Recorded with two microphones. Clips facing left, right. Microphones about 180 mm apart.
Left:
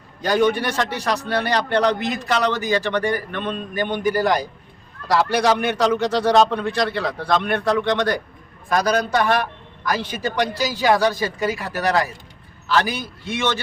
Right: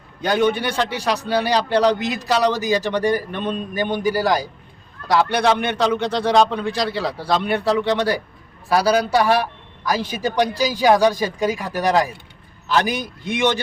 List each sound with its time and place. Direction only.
0.3 s a man's voice: centre (ahead or behind); by 13.6 s 15° right (ahead or behind)